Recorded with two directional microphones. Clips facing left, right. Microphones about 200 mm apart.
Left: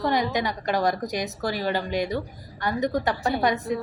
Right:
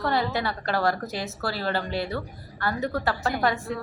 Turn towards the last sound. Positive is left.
turn(degrees=20)  # may be behind; listen again after turning